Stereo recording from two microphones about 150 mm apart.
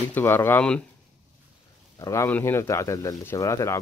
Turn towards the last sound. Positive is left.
turn(degrees=20)  # may be behind; listen again after turning